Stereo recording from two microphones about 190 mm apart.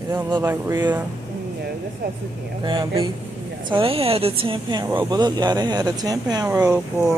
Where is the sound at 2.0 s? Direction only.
55° right (ahead or behind).